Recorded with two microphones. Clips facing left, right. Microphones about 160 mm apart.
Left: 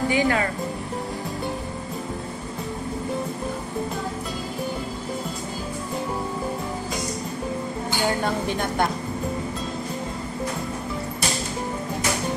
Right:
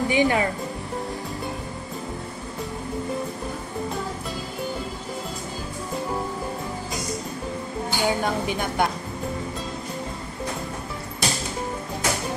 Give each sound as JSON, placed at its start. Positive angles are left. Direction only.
{"t": 0.1, "sound": "speech", "side_deg": -20}
{"t": 8.1, "sound": "a woman's voice", "side_deg": -5}